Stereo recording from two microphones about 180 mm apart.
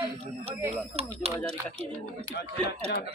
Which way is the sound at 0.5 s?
15° right (ahead or behind).